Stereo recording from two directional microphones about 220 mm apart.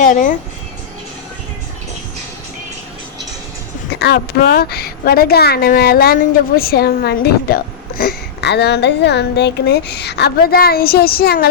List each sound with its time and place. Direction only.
0.0 s speech: 35° left (ahead or behind)
4.0 s a woman's voice: 45° left (ahead or behind)